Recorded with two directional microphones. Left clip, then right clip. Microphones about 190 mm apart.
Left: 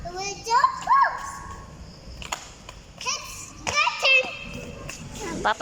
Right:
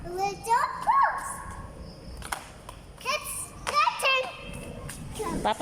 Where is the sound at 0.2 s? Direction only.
20° right (ahead or behind).